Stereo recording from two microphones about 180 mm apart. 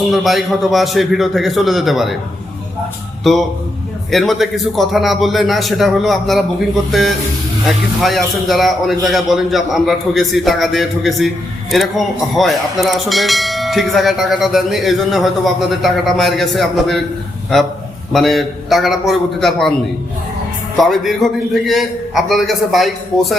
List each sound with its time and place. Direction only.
0.1 s speech: centre (ahead or behind)
3.3 s speech: centre (ahead or behind)
20.7 s speech: centre (ahead or behind)